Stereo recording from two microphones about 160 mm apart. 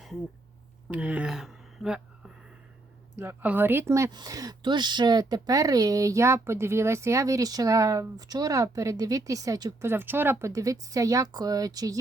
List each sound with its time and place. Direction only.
0.9 s speech: 10° right (ahead or behind)
3.2 s speech: 10° right (ahead or behind)
9.9 s speech: 15° right (ahead or behind)